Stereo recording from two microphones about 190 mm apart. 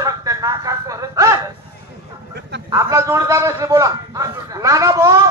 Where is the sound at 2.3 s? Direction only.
65° right (ahead or behind).